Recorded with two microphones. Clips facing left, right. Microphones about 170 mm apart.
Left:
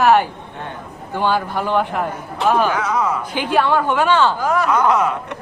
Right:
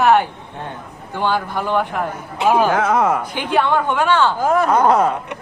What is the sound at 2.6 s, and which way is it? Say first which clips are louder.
Speech: right 3 dB; 50° right (ahead or behind).